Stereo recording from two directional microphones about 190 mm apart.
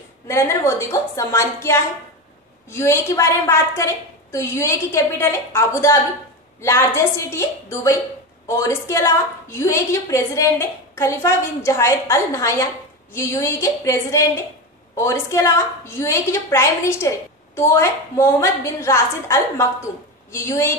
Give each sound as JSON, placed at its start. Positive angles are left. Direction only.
{"t": 0.3, "sound": "a woman's voice", "side_deg": 15}